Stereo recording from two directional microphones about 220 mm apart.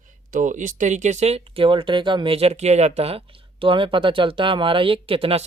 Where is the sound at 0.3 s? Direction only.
35° right (ahead or behind).